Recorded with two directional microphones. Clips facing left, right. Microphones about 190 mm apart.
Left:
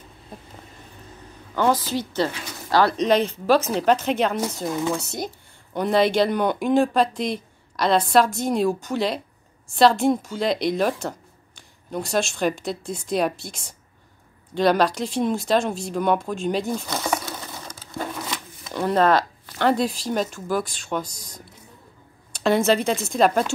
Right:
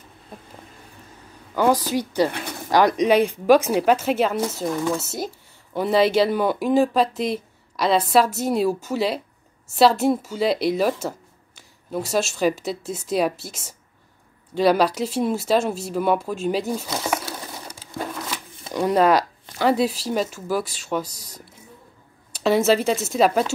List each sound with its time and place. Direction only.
1.5 s speech: 10° right (ahead or behind)
17.6 s a sound: 5° right (ahead or behind)
18.7 s speech: 10° right (ahead or behind)